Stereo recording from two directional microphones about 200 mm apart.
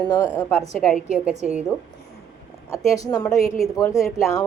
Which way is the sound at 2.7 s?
15° left (ahead or behind).